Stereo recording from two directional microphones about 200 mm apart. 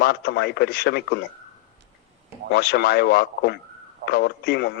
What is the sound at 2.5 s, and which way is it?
A man's voice, 55° left (ahead or behind).